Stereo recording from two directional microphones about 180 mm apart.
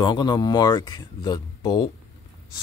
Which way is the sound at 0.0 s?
25° left (ahead or behind).